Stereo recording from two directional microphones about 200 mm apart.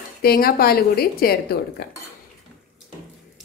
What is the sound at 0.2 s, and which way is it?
A woman's voice, 50° left (ahead or behind).